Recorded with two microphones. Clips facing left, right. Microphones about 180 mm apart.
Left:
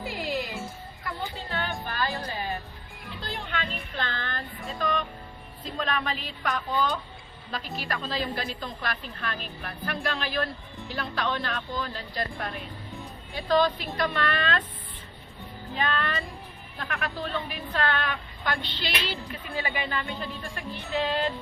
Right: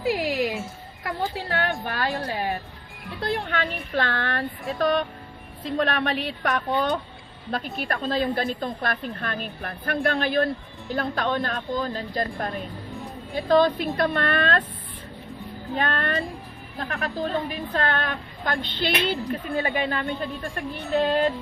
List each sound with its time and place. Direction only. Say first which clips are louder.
0.1 s music: right 8 dB; 90° right
1.4 s a sound: right 6 dB; 65° right (ahead or behind)
1.9 s a woman's voice: right 3 dB; 65° right (ahead or behind)
2.2 s music: right 5 dB; 65° right (ahead or behind)
3.2 s a woman's voice: right 8 dB; 60° right (ahead or behind)
15.7 s a woman's voice: right 3 dB; 50° right (ahead or behind)
16.7 s a woman's voice: right 4 dB; 35° right (ahead or behind)